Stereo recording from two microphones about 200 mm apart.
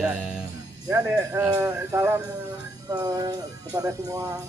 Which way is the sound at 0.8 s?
15° right (ahead or behind).